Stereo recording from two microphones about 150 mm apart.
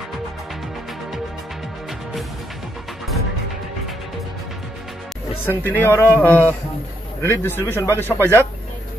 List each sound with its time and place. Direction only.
5.4 s speech: 15° left (ahead or behind)